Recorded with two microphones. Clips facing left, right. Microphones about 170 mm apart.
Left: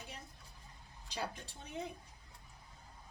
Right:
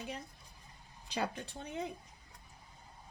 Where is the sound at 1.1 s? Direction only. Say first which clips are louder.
Right 5 dB; 65° right (ahead or behind).